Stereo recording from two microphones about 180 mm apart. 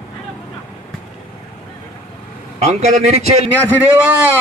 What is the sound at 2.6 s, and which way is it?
Speech, 40° right (ahead or behind).